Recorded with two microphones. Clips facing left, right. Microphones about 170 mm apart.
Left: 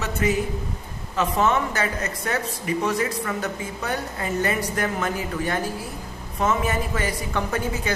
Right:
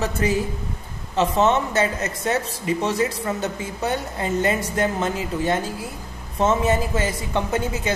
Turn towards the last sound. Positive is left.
turn(degrees=-25)  # may be behind; listen again after turning